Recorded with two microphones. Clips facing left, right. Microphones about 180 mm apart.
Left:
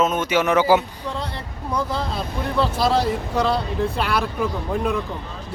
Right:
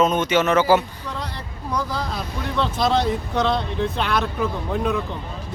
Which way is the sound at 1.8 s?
25° left (ahead or behind).